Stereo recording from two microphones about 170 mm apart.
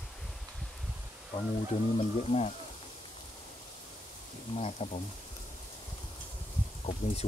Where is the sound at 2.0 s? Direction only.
40° left (ahead or behind).